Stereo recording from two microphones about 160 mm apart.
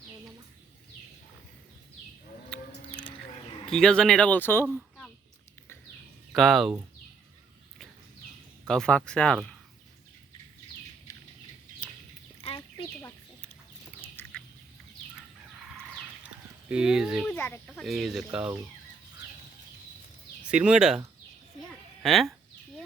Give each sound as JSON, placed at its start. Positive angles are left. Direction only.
{"t": 2.5, "sound": "bird", "side_deg": 5}
{"t": 3.7, "sound": "speech", "side_deg": 5}
{"t": 6.3, "sound": "speech", "side_deg": 0}
{"t": 8.6, "sound": "speech", "side_deg": 5}
{"t": 12.5, "sound": "chicken", "side_deg": 20}
{"t": 14.2, "sound": "duck", "side_deg": 15}
{"t": 16.2, "sound": "a sound", "side_deg": -10}
{"t": 17.2, "sound": "speech", "side_deg": 10}
{"t": 17.7, "sound": "speech", "side_deg": 0}
{"t": 20.5, "sound": "speech", "side_deg": -5}
{"t": 22.0, "sound": "speech", "side_deg": 0}